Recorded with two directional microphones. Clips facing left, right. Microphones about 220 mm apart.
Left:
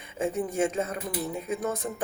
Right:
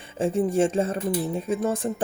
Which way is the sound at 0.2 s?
30° right (ahead or behind).